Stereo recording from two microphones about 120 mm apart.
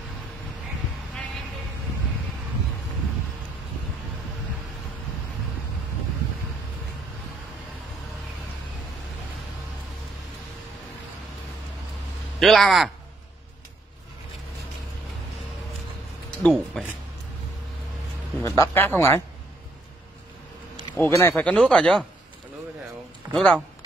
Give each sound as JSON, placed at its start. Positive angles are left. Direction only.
{"t": 12.4, "sound": "a man's voice", "side_deg": 0}
{"t": 16.3, "sound": "a sound", "side_deg": 5}
{"t": 18.4, "sound": "speech", "side_deg": 25}
{"t": 20.9, "sound": "speech", "side_deg": 20}
{"t": 23.3, "sound": "speech", "side_deg": 10}